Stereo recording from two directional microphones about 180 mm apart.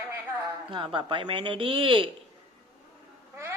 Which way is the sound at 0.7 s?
30° right (ahead or behind).